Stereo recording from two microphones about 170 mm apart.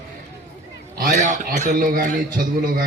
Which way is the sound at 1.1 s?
45° right (ahead or behind).